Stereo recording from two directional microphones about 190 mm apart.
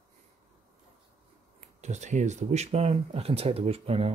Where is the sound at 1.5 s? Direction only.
40° right (ahead or behind).